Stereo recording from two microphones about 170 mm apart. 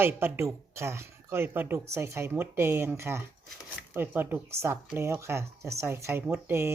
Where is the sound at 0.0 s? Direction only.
15° right (ahead or behind).